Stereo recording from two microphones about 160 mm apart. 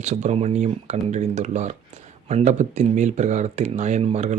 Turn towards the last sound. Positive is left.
turn(degrees=-45)  # may be behind; listen again after turning